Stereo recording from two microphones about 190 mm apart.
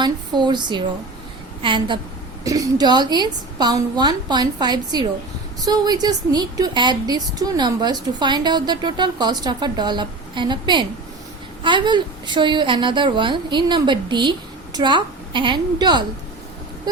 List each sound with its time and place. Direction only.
0.0 s a woman's voice: 25° right (ahead or behind)